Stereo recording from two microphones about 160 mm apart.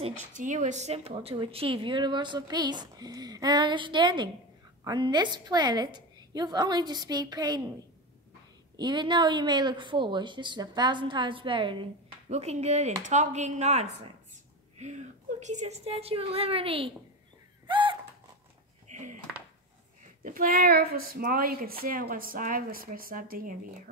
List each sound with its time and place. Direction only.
0.4 s speech: 50° right (ahead or behind); by 7.6 s 25° right (ahead or behind)
8.7 s speech: 30° right (ahead or behind)
12.3 s a woman's voice: 40° right (ahead or behind)
17.6 s a sound: 30° right (ahead or behind)
18.9 s a sound: 45° right (ahead or behind)
20.2 s speech: 65° right (ahead or behind)